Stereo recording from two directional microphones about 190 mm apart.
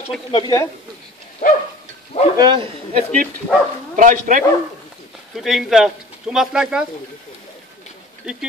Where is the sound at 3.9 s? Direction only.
40° right (ahead or behind).